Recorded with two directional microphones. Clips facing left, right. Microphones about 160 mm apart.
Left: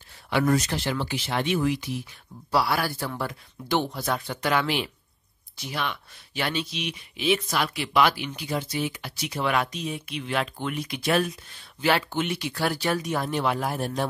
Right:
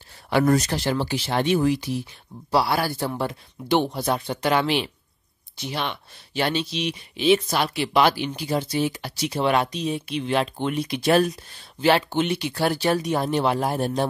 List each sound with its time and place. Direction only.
0.3 s speech: 40° right (ahead or behind)